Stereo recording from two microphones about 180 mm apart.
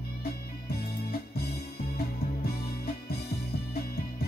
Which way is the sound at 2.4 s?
60° left (ahead or behind).